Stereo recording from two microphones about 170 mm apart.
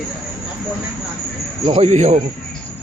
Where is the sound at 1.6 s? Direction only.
35° right (ahead or behind).